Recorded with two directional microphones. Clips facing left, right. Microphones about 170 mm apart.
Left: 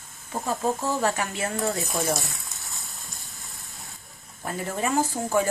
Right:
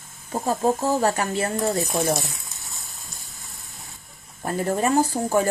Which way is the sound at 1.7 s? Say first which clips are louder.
Right 4 dB; centre (ahead or behind).